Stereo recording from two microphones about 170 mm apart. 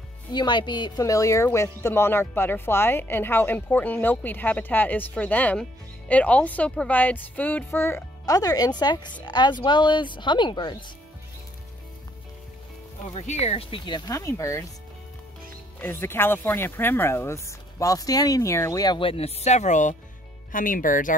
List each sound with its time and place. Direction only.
0.3 s a woman's voice: 25° left (ahead or behind)
13.1 s speech: 40° left (ahead or behind); by 14.7 s 20° left (ahead or behind)
15.8 s speech: 15° left (ahead or behind); by 21.1 s 50° left (ahead or behind)